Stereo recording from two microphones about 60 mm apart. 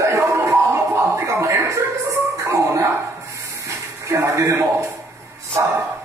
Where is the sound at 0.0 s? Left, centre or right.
Right.